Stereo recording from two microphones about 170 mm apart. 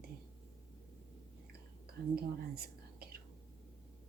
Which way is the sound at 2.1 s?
65° right (ahead or behind).